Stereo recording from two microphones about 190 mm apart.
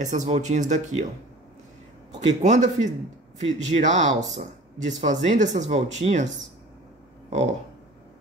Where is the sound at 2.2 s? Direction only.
40° right (ahead or behind).